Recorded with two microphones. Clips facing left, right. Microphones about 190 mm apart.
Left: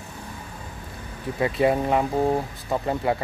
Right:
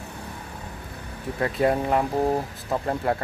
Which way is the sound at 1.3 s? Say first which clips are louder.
Left 1 dB; 5° left (ahead or behind).